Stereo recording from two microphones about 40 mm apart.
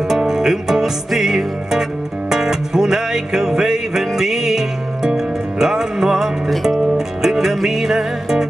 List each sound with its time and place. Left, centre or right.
0.1 s music: centre